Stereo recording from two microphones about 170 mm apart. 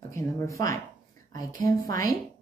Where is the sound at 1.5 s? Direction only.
50° right (ahead or behind).